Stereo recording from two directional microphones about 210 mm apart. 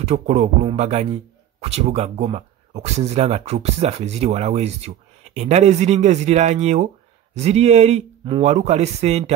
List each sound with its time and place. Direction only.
0.0 s a man's voice: 30° right (ahead or behind)